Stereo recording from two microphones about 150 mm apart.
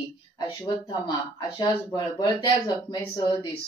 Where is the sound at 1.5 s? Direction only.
30° left (ahead or behind).